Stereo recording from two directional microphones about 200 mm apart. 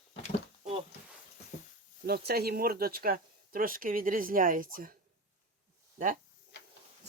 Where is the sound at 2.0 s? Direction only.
50° right (ahead or behind).